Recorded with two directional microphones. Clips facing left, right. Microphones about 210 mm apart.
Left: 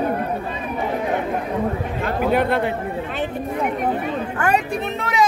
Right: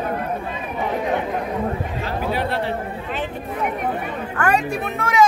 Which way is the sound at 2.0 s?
55° left (ahead or behind).